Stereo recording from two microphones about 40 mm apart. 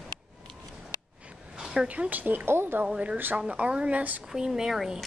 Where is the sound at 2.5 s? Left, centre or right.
Right.